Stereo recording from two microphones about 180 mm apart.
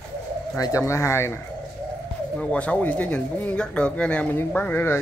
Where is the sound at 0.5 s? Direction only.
20° left (ahead or behind).